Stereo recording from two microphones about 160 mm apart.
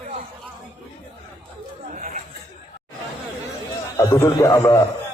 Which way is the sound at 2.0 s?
50° right (ahead or behind).